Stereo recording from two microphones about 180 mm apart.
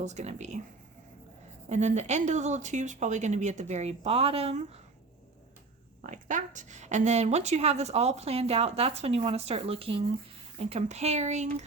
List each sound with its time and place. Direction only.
0.0 s a woman's voice: 40° right (ahead or behind)
1.7 s a woman's voice: 40° right (ahead or behind)
6.0 s a woman's voice: 45° right (ahead or behind)